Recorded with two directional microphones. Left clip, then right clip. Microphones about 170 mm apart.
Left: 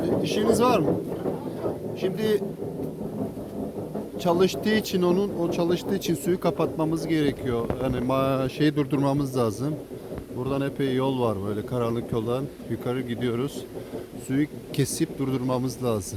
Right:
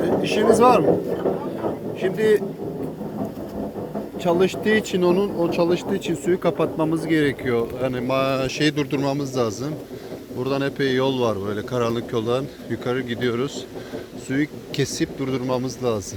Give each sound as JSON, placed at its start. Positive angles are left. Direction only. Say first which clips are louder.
{"t": 0.0, "sound": "a sound", "louder": "right 5 dB", "side_deg": 15}
{"t": 0.5, "sound": "speech", "louder": "right 7 dB", "side_deg": 10}
{"t": 2.0, "sound": "speech", "louder": "right 7 dB", "side_deg": 10}
{"t": 4.2, "sound": "speech", "louder": "right 3 dB", "side_deg": 15}
{"t": 6.6, "sound": "speech", "louder": "right 4 dB", "side_deg": 0}
{"t": 8.0, "sound": "speech", "louder": "right 3 dB", "side_deg": 25}
{"t": 9.0, "sound": "a man's voice", "louder": "right 2 dB", "side_deg": 35}
{"t": 10.4, "sound": "speech", "louder": "right 5 dB", "side_deg": 10}